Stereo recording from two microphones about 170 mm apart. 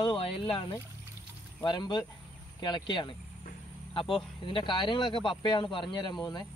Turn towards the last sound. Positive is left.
turn(degrees=25)  # may be behind; listen again after turning